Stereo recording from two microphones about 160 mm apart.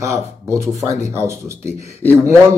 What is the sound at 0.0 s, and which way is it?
Speech, 20° right (ahead or behind).